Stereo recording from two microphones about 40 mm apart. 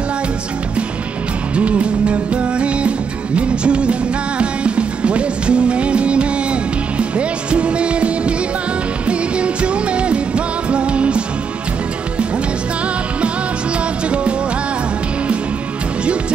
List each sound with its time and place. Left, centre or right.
1.5 s music: right
14.0 s music: right